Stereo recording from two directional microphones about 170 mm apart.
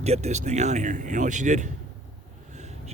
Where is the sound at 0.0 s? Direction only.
40° right (ahead or behind).